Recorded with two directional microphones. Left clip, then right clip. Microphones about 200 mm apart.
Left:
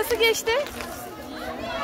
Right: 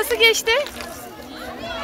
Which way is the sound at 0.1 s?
5° right (ahead or behind).